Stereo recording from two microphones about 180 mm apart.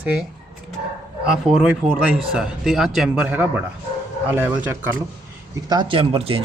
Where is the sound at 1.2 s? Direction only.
5° right (ahead or behind).